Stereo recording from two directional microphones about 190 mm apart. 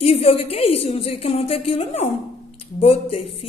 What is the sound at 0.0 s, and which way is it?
A woman's voice, 35° left (ahead or behind).